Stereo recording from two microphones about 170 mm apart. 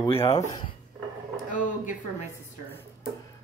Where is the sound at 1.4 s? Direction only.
50° left (ahead or behind).